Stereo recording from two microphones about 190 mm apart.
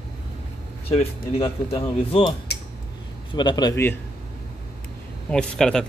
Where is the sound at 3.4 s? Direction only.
20° left (ahead or behind).